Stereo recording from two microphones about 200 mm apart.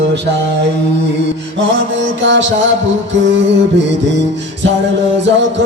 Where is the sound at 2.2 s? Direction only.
65° right (ahead or behind).